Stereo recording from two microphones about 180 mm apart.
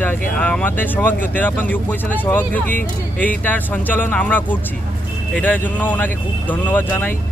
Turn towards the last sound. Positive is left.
turn(degrees=10)  # may be behind; listen again after turning